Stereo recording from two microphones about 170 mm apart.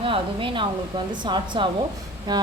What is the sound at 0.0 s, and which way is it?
A woman's voice, 30° right (ahead or behind).